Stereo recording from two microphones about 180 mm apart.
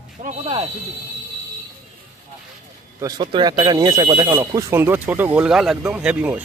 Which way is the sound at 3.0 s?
20° right (ahead or behind).